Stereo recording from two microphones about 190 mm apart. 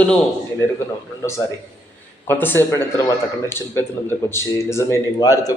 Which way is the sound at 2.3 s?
10° left (ahead or behind).